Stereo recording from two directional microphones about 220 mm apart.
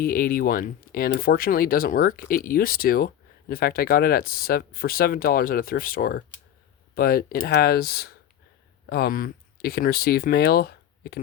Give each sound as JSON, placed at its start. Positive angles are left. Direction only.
{"t": 0.0, "sound": "speech", "side_deg": 40}